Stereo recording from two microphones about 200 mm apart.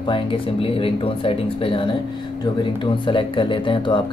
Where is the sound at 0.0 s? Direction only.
25° left (ahead or behind).